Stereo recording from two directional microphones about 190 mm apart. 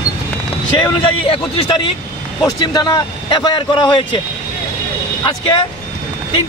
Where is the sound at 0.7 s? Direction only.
25° left (ahead or behind).